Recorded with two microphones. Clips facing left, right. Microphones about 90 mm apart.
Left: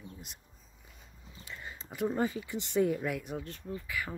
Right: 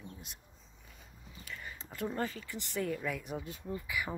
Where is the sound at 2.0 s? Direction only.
10° left (ahead or behind).